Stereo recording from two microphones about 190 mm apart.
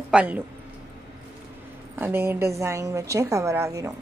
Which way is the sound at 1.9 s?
10° right (ahead or behind).